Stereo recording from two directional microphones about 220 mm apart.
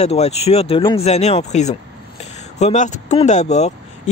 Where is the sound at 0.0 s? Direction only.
30° left (ahead or behind).